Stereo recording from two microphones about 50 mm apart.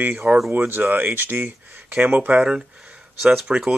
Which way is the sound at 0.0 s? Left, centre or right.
Right.